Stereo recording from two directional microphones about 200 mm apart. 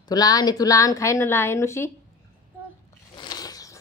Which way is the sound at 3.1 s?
20° left (ahead or behind).